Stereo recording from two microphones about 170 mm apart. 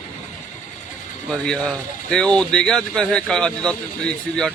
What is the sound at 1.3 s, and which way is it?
Speech, 5° left (ahead or behind).